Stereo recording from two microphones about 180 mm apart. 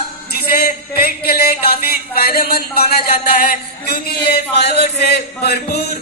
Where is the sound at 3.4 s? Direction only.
60° left (ahead or behind).